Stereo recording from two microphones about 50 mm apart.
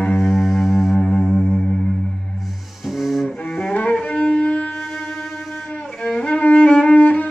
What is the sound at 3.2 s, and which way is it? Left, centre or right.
Cello, centre.